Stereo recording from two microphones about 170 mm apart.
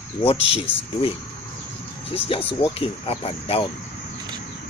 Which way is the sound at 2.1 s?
35° left (ahead or behind).